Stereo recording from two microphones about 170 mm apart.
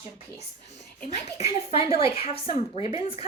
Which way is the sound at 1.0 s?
40° left (ahead or behind).